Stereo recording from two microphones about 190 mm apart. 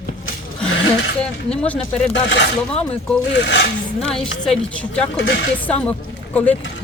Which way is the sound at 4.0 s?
5° left (ahead or behind).